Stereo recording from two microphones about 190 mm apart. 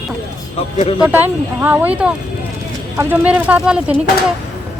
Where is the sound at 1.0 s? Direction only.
10° right (ahead or behind).